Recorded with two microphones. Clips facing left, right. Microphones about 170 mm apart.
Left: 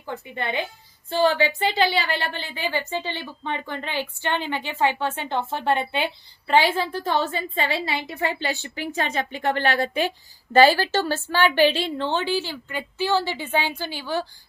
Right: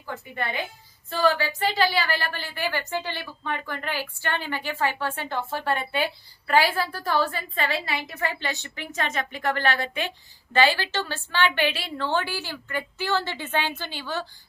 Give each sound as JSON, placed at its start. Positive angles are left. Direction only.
{"t": 0.1, "sound": "a woman's voice", "side_deg": 25}